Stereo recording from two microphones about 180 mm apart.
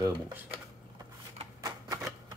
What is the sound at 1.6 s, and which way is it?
Typewriter, 20° right (ahead or behind).